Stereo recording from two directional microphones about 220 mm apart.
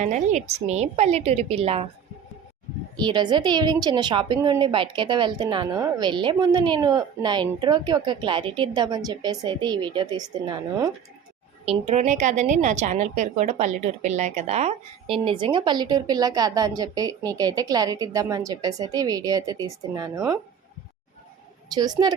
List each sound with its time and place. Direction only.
0.0 s a woman's voice: 35° right (ahead or behind)
2.9 s a woman's voice: 20° right (ahead or behind)
11.6 s a woman's voice: 30° right (ahead or behind)
21.7 s a woman's voice: 20° right (ahead or behind)